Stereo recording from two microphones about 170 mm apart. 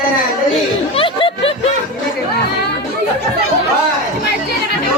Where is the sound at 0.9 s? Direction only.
30° left (ahead or behind).